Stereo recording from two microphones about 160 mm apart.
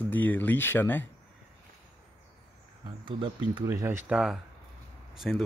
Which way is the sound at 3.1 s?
30° right (ahead or behind).